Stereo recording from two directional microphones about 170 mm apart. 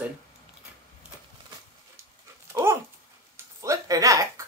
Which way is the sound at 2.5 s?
15° right (ahead or behind).